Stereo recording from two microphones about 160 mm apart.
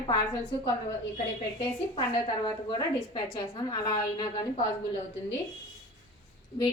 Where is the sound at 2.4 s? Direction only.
25° left (ahead or behind).